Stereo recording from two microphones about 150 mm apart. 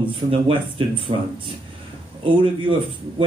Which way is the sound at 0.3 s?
35° right (ahead or behind).